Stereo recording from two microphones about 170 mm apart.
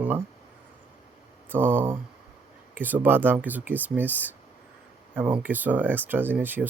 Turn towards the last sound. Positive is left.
turn(degrees=-10)  # may be behind; listen again after turning